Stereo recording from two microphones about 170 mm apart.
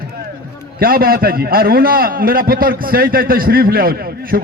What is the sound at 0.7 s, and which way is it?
A man's voice, 60° right (ahead or behind).